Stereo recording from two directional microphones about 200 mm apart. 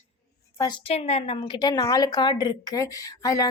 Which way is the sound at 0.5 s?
20° left (ahead or behind).